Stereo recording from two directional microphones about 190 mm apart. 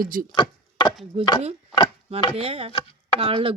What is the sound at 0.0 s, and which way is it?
Chopping, 45° right (ahead or behind).